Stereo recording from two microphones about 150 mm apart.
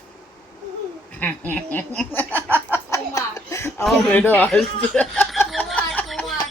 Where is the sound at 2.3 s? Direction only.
15° right (ahead or behind).